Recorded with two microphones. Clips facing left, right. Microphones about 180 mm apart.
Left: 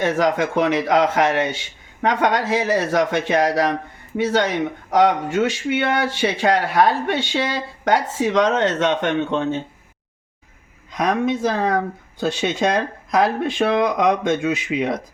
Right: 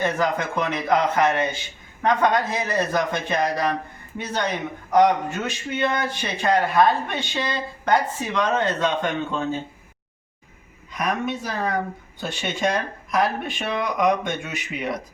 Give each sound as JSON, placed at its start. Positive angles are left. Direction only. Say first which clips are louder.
{"t": 0.0, "sound": "speech", "louder": "left 4 dB", "side_deg": 90}
{"t": 10.9, "sound": "speech", "louder": "left 6 dB", "side_deg": 90}